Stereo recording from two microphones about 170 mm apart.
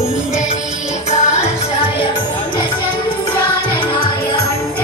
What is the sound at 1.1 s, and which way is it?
Music, 40° left (ahead or behind).